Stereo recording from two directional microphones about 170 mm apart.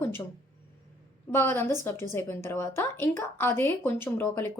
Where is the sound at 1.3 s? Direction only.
15° left (ahead or behind).